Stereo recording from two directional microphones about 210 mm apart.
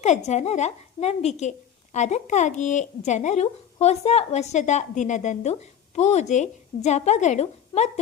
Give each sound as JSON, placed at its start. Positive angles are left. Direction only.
{"t": 0.0, "sound": "a woman's voice", "side_deg": 35}